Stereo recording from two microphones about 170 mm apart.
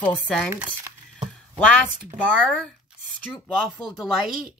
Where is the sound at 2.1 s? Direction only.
5° left (ahead or behind).